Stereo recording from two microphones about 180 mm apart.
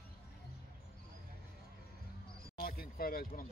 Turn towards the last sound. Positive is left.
turn(degrees=55)  # may be behind; listen again after turning